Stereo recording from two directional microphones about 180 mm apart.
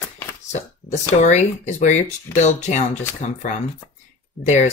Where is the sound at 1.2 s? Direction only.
40° left (ahead or behind).